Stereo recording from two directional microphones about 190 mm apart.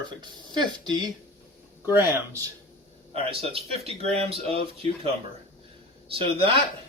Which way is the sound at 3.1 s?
30° right (ahead or behind).